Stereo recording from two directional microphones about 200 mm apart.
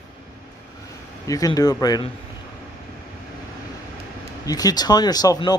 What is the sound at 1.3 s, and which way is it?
Speech, 20° left (ahead or behind).